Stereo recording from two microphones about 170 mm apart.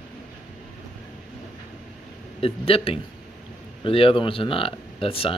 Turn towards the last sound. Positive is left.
turn(degrees=35)  # may be behind; listen again after turning